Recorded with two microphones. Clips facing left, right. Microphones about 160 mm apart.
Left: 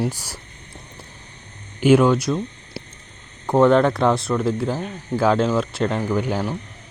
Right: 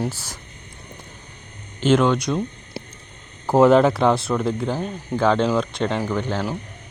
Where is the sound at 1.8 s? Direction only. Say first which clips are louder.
Left 3 dB; 10° left (ahead or behind).